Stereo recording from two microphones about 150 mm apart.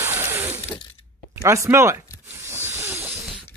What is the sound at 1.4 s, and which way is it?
Speech, 20° right (ahead or behind).